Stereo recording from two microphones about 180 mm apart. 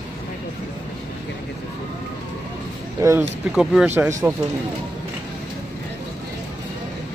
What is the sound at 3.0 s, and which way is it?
Speech, 15° right (ahead or behind).